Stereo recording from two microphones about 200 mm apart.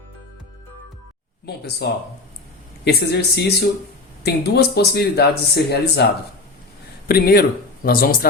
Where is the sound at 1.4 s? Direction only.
55° left (ahead or behind).